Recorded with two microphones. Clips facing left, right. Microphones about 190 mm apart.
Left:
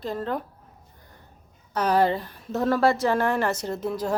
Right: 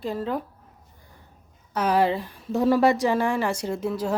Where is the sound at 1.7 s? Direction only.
5° right (ahead or behind).